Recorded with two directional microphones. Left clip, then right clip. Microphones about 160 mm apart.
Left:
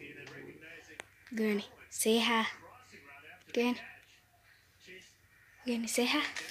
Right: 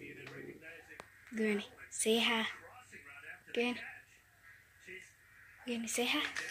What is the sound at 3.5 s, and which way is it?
Speech, 45° left (ahead or behind).